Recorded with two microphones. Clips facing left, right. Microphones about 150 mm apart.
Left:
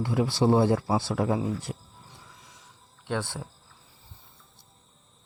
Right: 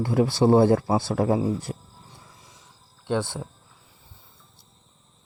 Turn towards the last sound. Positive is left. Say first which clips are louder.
# right 5 dB
turn(degrees=-25)  # may be behind; listen again after turning